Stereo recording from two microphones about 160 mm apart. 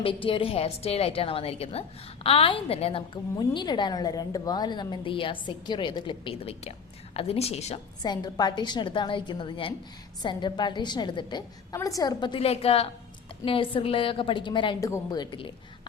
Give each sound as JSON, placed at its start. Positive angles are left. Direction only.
{"t": 0.0, "sound": "a woman's voice", "side_deg": 35}
{"t": 8.0, "sound": "a woman's voice", "side_deg": 25}